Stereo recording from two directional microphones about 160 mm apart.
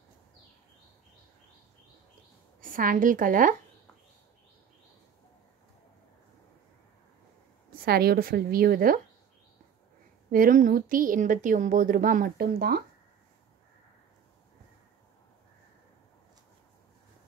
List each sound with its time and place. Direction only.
2.6 s speech: 60° right (ahead or behind)
7.8 s a woman's voice: 75° right (ahead or behind)
10.3 s speech: 60° right (ahead or behind)